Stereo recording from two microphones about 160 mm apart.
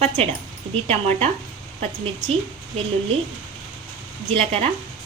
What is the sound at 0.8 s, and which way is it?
Speech, 45° right (ahead or behind).